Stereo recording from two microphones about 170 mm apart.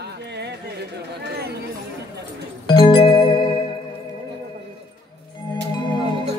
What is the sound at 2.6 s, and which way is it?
Music, 25° left (ahead or behind).